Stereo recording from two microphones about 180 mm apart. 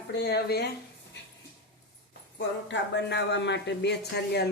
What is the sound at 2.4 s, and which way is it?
Speech, 80° left.